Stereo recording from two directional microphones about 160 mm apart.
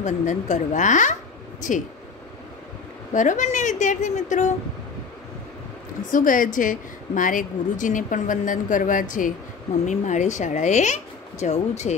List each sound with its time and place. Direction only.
0.0 s speech: 50° left (ahead or behind)
3.1 s speech: 50° left (ahead or behind)
6.1 s a woman's voice: 55° left (ahead or behind)